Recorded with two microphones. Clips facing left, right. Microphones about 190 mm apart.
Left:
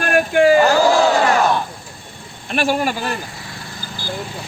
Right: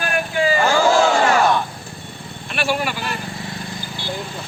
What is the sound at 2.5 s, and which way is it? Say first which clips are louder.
Speech: left 4 dB; 40° left (ahead or behind).